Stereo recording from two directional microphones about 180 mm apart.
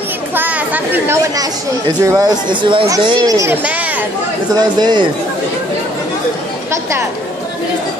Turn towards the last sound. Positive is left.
turn(degrees=-15)  # may be behind; listen again after turning